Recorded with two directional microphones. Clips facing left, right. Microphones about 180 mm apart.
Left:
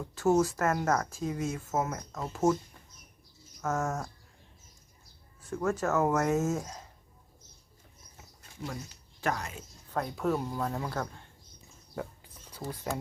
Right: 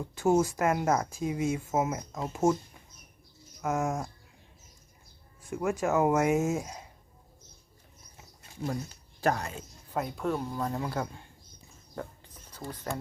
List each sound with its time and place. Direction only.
0.1 s speech: 15° right (ahead or behind)
3.6 s speech: 10° right (ahead or behind)
5.4 s speech: 10° right (ahead or behind)
9.2 s speech: 30° right (ahead or behind)
9.9 s speech: 5° right (ahead or behind)
11.9 s a sound: 10° left (ahead or behind)